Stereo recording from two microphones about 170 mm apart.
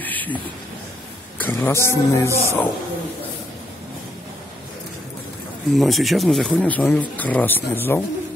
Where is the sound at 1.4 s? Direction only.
15° left (ahead or behind).